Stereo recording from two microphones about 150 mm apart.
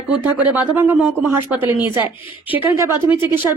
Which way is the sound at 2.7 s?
15° right (ahead or behind).